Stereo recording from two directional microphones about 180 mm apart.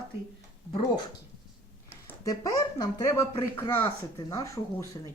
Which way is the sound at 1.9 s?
15° left (ahead or behind).